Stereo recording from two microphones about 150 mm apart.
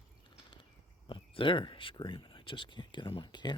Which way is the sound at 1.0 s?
35° left (ahead or behind).